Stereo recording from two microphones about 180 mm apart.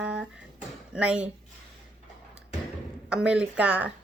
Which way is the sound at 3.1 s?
5° right (ahead or behind).